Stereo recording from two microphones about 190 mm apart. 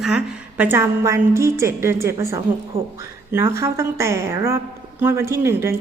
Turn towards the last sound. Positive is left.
turn(degrees=-15)  # may be behind; listen again after turning